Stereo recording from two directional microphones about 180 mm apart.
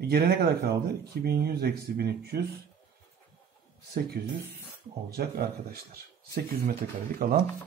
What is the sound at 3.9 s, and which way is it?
Speech, 60° right (ahead or behind).